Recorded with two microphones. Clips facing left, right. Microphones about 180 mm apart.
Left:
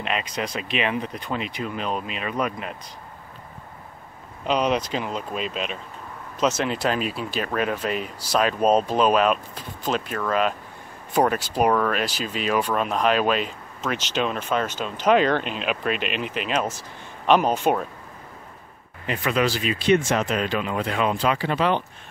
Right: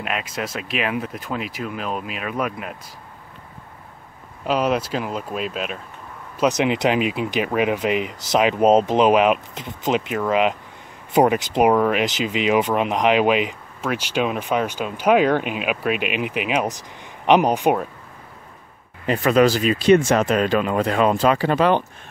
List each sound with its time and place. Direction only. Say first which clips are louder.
0.0 s speech: even; 5° right (ahead or behind)
4.5 s speech: right 2 dB; 5° right (ahead or behind)
6.4 s speech: right 4 dB; 15° right (ahead or behind)
19.0 s speech: right 7 dB; 40° right (ahead or behind)